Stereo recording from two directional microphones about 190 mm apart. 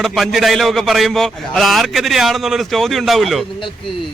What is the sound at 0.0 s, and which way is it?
A man's voice, centre (ahead or behind).